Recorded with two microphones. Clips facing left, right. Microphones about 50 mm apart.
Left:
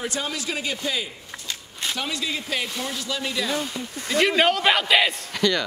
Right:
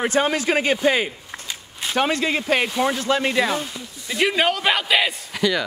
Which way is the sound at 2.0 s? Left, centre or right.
Right.